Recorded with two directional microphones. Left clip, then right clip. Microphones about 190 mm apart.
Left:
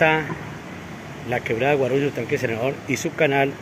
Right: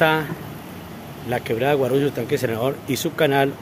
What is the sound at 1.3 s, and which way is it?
Speech, 15° right (ahead or behind).